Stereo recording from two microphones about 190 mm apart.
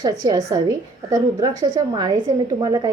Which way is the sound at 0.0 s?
20° right (ahead or behind).